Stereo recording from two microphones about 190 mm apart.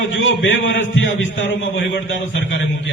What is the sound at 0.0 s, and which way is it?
A man's voice, 75° left (ahead or behind).